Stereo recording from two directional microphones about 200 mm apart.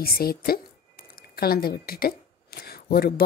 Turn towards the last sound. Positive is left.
turn(degrees=50)  # may be behind; listen again after turning